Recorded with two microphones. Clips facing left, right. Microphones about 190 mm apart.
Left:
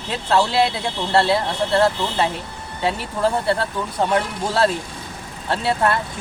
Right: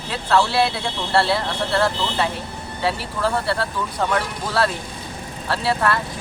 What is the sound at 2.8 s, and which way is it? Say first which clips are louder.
Speech: left 2 dB; 20° left (ahead or behind).